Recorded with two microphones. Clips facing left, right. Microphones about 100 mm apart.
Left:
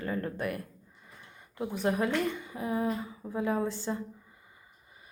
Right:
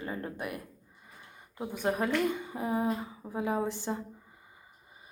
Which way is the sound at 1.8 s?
25° right (ahead or behind).